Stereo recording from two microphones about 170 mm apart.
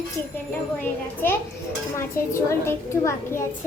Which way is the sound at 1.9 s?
15° left (ahead or behind).